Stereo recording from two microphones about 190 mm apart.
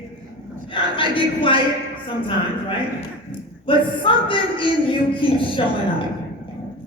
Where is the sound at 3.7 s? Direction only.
25° left (ahead or behind).